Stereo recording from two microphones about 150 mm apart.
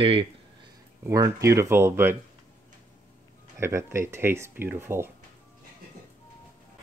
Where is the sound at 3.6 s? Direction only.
20° right (ahead or behind).